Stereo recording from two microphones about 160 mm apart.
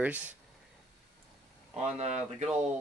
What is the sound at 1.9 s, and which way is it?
Speech, 45° right (ahead or behind).